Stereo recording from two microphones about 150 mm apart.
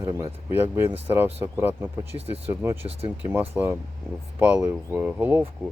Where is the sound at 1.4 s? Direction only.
15° right (ahead or behind).